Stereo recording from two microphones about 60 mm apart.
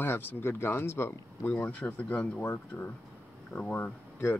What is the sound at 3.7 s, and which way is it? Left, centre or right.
Speech, left.